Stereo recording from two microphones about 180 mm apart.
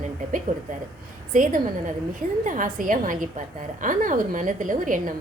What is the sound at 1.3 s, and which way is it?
A woman's voice, 45° right (ahead or behind).